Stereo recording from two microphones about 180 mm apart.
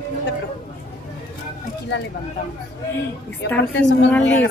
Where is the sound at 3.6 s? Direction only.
85° left.